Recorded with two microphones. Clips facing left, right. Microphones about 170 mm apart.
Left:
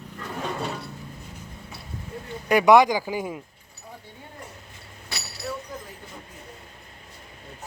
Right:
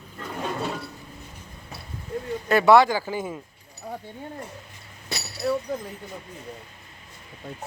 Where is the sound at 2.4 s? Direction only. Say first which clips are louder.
Even; 15° left (ahead or behind).